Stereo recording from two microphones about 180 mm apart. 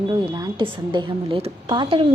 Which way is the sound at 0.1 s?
25° right (ahead or behind).